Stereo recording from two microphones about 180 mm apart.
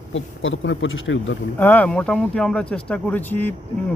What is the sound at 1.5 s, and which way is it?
A man's voice, 10° left (ahead or behind).